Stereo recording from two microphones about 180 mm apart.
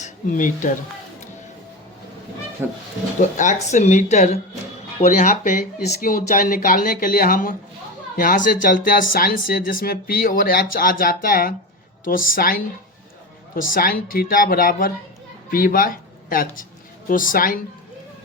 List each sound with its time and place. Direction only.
0.0 s speech: 45° left (ahead or behind)
3.2 s speech: 45° left (ahead or behind)